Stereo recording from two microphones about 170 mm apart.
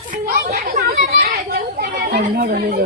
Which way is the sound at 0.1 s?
55° right (ahead or behind).